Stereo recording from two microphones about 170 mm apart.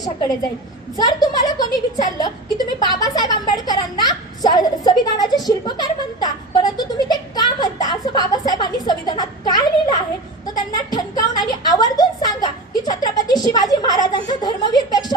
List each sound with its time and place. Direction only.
0.9 s a woman's voice: 25° left (ahead or behind)